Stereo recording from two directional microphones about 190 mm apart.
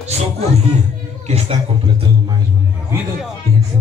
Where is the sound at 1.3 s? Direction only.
30° right (ahead or behind).